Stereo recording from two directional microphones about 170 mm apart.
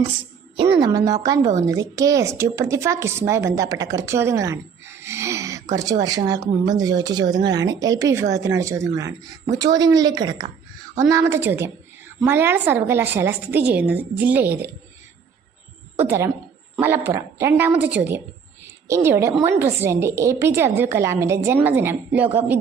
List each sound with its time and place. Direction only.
0.5 s a woman's voice: 35° right (ahead or behind)
0.9 s a woman's voice: 20° right (ahead or behind)
16.0 s a woman's voice: 15° right (ahead or behind)
18.6 s a sound: 15° right (ahead or behind)
19.4 s a woman's voice: 15° right (ahead or behind)